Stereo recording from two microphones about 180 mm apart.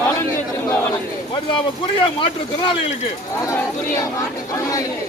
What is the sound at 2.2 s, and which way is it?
Speech, 30° left (ahead or behind).